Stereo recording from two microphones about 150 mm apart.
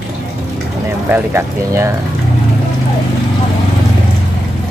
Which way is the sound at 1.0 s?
15° right (ahead or behind).